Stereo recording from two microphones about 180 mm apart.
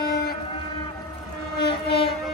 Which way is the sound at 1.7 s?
30° left (ahead or behind).